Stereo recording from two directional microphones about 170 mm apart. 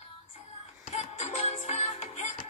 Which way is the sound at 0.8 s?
45° left (ahead or behind).